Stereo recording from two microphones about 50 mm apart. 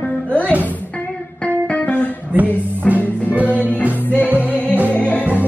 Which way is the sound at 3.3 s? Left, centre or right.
Right.